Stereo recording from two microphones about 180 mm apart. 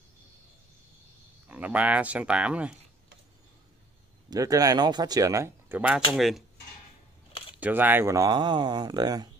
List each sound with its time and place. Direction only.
1.5 s speech: 10° right (ahead or behind)
4.3 s speech: 20° right (ahead or behind); by 6.4 s centre (ahead or behind)
7.5 s speech: 10° right (ahead or behind)